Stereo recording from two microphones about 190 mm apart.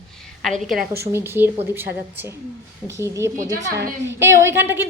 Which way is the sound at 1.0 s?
10° right (ahead or behind).